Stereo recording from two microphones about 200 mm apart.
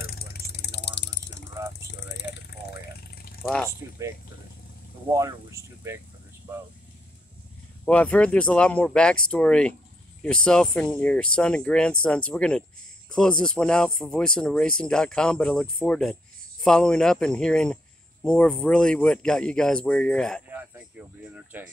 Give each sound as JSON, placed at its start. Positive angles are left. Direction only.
{"t": 0.0, "sound": "vehicle", "side_deg": 50}
{"t": 2.3, "sound": "a sound", "side_deg": 50}
{"t": 3.4, "sound": "speech", "side_deg": 5}
{"t": 7.8, "sound": "speech", "side_deg": 5}
{"t": 21.4, "sound": "speech", "side_deg": -10}